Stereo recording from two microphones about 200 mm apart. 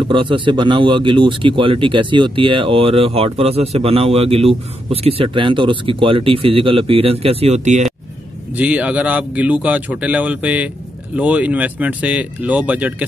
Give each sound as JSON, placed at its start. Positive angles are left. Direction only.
{"t": 0.1, "sound": "speech", "side_deg": -25}
{"t": 8.5, "sound": "speech", "side_deg": -5}